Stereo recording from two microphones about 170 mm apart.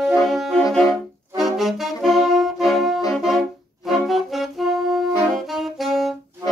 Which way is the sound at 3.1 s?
Centre (ahead or behind).